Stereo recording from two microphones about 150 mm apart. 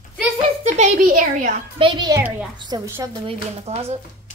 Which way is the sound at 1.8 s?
30° right (ahead or behind).